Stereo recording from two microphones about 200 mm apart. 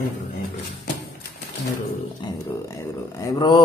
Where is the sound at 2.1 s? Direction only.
20° left (ahead or behind).